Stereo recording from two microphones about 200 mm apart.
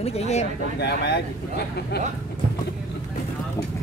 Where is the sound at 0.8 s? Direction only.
55° left (ahead or behind).